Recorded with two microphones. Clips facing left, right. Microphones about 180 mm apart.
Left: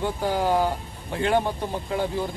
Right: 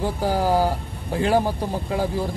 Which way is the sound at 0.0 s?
35° right (ahead or behind).